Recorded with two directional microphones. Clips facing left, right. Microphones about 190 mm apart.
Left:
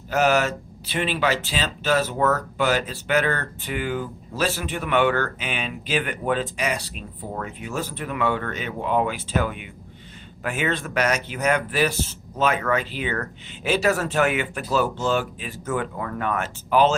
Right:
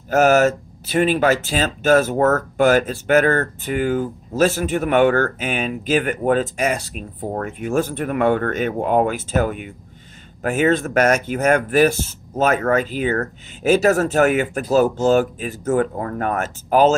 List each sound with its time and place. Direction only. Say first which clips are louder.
0.1 s speech: right 6 dB; 45° right (ahead or behind)